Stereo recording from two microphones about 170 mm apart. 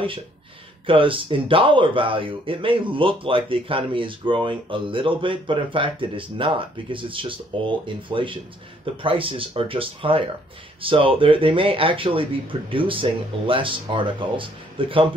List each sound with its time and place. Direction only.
0.8 s speech: 30° right (ahead or behind)